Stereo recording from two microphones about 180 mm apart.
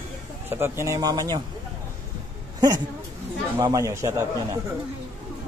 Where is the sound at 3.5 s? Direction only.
20° right (ahead or behind).